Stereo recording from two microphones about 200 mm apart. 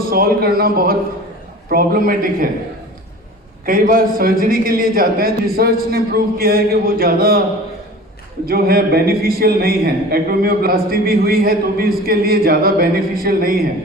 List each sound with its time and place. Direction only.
0.1 s a man's voice: 50° right (ahead or behind)
3.7 s a man's voice: 45° right (ahead or behind)
8.4 s a man's voice: 50° right (ahead or behind)